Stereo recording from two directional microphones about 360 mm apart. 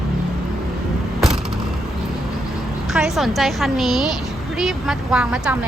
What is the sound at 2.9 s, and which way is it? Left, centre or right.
A woman's voice, centre.